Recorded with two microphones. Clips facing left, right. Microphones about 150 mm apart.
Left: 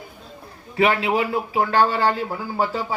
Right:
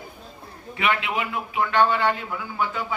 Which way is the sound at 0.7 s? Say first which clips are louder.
Left 6 dB; 35° left (ahead or behind).